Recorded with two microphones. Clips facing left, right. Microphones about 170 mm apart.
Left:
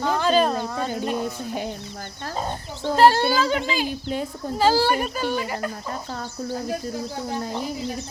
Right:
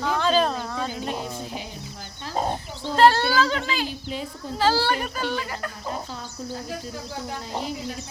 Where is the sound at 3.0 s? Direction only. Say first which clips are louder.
Left 1 dB; 15° left (ahead or behind).